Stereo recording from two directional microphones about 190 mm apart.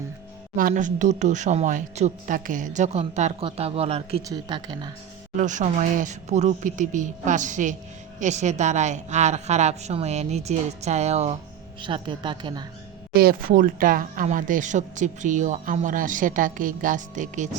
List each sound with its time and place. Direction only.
0.5 s speech: 45° right (ahead or behind); by 4.9 s 25° right (ahead or behind)
5.4 s speech: 40° right (ahead or behind); by 12.6 s 25° right (ahead or behind)
13.1 s speech: 50° right (ahead or behind)